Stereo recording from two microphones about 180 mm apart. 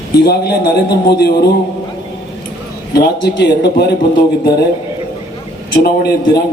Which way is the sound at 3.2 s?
65° left (ahead or behind).